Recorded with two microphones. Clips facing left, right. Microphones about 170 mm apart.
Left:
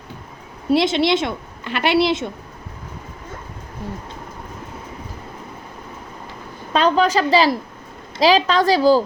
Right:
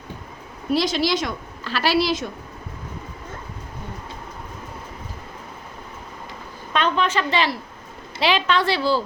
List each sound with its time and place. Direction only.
0.7 s speech: 25° left (ahead or behind)
6.7 s speech: 35° left (ahead or behind)